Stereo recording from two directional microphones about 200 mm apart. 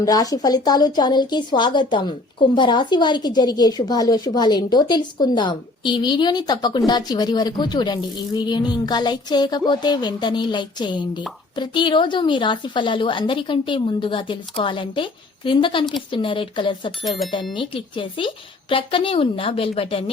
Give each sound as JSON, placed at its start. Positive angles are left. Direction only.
{"t": 0.0, "sound": "a woman's voice", "side_deg": 20}